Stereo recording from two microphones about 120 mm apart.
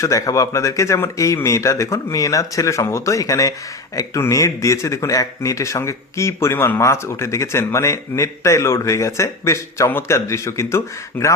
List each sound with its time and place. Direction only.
0.0 s speech: 25° left (ahead or behind)